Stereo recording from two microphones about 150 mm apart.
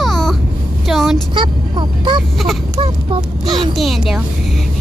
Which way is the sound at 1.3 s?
30° right (ahead or behind).